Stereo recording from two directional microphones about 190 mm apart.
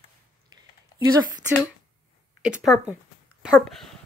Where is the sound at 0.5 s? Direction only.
20° right (ahead or behind).